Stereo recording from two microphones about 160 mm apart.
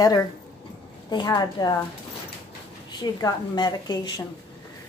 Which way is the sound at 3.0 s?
25° left (ahead or behind).